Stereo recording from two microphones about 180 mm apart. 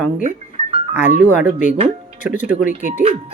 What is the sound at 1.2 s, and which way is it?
Speech, 10° right (ahead or behind).